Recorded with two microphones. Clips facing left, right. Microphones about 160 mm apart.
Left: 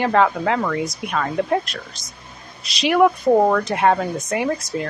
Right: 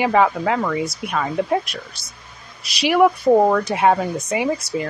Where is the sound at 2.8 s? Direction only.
5° right (ahead or behind).